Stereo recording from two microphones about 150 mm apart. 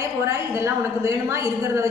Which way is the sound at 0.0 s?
20° right (ahead or behind).